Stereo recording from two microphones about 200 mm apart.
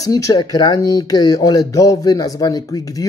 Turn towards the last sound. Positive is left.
turn(degrees=15)  # may be behind; listen again after turning